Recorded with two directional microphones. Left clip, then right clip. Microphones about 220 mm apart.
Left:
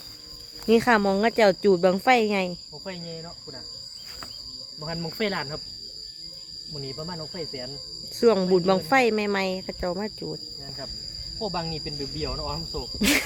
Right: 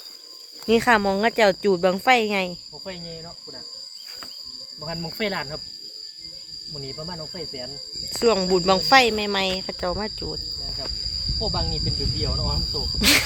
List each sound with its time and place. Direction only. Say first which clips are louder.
0.6 s cricket: right 2 dB; 5° left (ahead or behind)
4.9 s speech: right 1 dB; 25° right (ahead or behind)
6.7 s speech: right 1 dB; 25° right (ahead or behind)
8.2 s cricket: even; 10° left (ahead or behind)
8.5 s speech: right 4 dB; 5° left (ahead or behind)
13.0 s cricket: right 5 dB; 5° left (ahead or behind)